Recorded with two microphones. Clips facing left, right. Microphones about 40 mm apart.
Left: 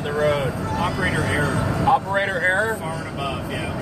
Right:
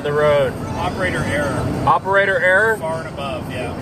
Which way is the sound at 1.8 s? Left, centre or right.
Centre.